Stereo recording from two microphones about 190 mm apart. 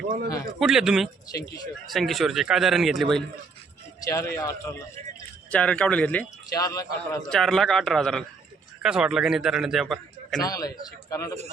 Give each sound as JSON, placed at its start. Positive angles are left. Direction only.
{"t": 0.6, "sound": "a man's voice", "side_deg": 0}
{"t": 1.3, "sound": "speech", "side_deg": 20}
{"t": 1.9, "sound": "a man's voice", "side_deg": 0}
{"t": 4.0, "sound": "a man's voice", "side_deg": 15}
{"t": 6.5, "sound": "a man's voice", "side_deg": 20}
{"t": 7.3, "sound": "a man's voice", "side_deg": 0}
{"t": 10.4, "sound": "a man's voice", "side_deg": 20}